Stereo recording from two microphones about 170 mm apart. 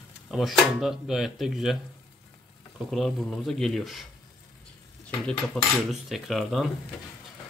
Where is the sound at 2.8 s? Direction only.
Centre (ahead or behind).